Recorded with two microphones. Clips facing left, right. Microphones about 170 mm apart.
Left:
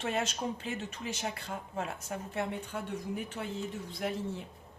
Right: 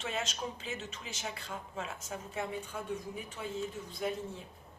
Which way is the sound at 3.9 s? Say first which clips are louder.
Even; 65° left (ahead or behind).